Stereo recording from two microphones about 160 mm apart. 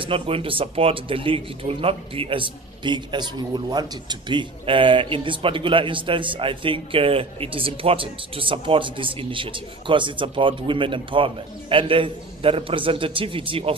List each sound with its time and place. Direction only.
0.0 s speech: 35° right (ahead or behind)